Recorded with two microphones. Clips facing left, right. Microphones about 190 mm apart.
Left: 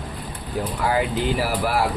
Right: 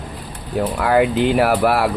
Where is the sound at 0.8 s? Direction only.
65° right (ahead or behind).